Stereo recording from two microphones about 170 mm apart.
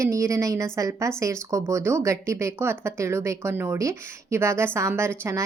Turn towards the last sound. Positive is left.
turn(degrees=-15)  # may be behind; listen again after turning